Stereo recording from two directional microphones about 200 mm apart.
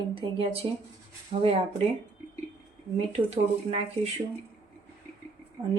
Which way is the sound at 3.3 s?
30° right (ahead or behind).